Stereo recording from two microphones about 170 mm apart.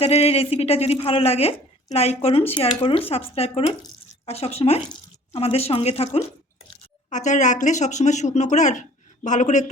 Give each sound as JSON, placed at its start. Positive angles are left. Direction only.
{"t": 0.0, "sound": "speech", "side_deg": 40}